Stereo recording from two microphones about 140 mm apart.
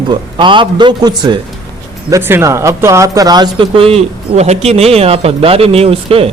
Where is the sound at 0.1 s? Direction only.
35° right (ahead or behind).